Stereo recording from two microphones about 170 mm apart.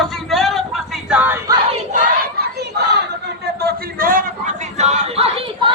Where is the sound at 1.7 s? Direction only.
45° right (ahead or behind).